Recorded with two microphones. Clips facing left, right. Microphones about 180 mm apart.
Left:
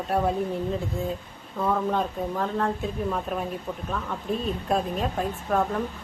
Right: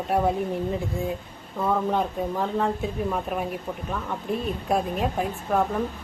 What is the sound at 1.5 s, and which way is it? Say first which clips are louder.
Speech: right 1 dB; 10° right (ahead or behind).